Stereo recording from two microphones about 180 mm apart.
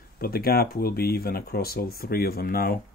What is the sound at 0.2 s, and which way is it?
Speech, 55° left (ahead or behind).